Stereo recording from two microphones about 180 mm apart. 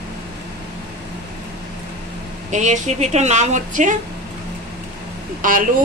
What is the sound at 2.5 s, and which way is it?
A woman's voice, 40° right (ahead or behind).